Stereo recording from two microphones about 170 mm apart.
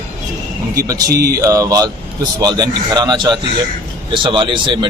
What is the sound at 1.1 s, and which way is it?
Speech, 65° right (ahead or behind).